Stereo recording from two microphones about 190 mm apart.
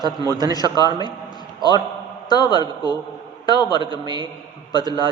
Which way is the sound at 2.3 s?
20° left (ahead or behind).